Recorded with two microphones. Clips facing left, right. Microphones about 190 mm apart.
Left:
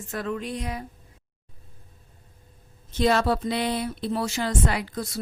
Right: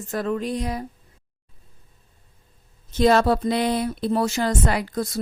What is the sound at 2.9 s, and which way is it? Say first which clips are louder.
Speech: right 4 dB; 45° right (ahead or behind).